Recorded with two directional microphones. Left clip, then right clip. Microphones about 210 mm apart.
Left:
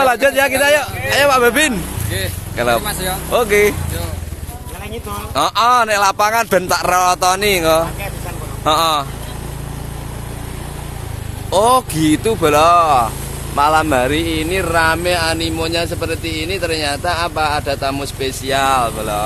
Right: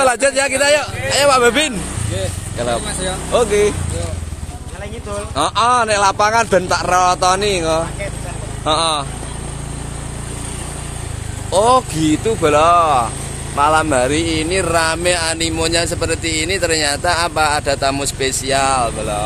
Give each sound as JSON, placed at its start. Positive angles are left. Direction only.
{"t": 0.0, "sound": "speech", "side_deg": 0}
{"t": 2.5, "sound": "speech", "side_deg": 25}
{"t": 5.3, "sound": "speech", "side_deg": 30}
{"t": 11.5, "sound": "speech", "side_deg": 20}
{"t": 18.5, "sound": "speech", "side_deg": 0}